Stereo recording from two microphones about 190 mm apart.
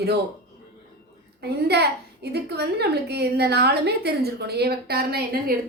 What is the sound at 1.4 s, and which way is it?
A woman's voice, 60° right (ahead or behind).